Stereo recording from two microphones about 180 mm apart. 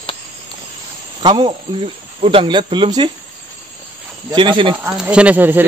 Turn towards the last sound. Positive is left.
turn(degrees=-10)  # may be behind; listen again after turning